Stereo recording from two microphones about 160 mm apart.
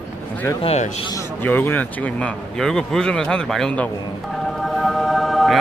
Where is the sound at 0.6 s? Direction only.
40° left (ahead or behind).